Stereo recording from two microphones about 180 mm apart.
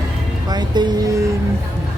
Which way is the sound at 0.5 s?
25° right (ahead or behind).